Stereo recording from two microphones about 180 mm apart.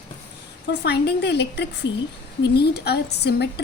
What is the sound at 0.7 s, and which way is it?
A woman's voice, 65° left (ahead or behind).